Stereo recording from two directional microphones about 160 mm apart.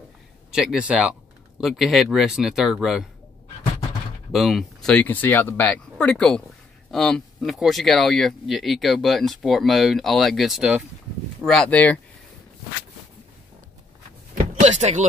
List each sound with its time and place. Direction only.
0.5 s speech: 5° right (ahead or behind)
4.3 s speech: centre (ahead or behind)
14.6 s a sound: 45° right (ahead or behind)